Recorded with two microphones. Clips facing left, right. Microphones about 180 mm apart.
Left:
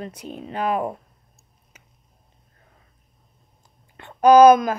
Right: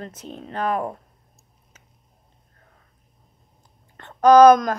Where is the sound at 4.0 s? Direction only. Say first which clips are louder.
Even; 10° left (ahead or behind).